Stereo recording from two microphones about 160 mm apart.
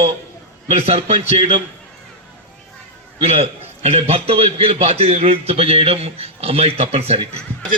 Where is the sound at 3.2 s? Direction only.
40° right (ahead or behind).